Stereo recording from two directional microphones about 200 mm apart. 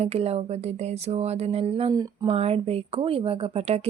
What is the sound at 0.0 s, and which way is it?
Speech, 30° right (ahead or behind).